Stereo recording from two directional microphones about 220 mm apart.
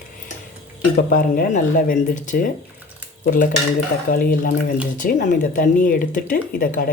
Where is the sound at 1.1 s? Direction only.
40° left (ahead or behind).